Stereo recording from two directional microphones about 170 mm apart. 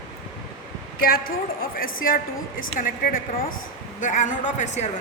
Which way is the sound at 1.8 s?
55° left (ahead or behind).